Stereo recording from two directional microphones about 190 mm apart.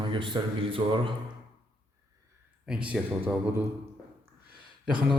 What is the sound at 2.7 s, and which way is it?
Speech, 5° right (ahead or behind).